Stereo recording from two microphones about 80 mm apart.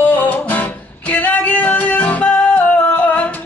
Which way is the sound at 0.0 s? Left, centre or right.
Centre.